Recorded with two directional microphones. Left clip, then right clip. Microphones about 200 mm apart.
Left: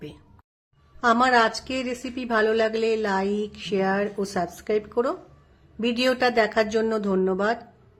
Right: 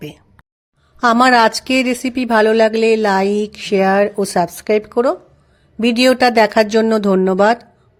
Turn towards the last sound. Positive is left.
turn(degrees=-40)  # may be behind; listen again after turning